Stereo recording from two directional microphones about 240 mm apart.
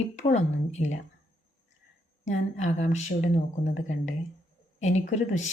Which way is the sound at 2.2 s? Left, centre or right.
Left.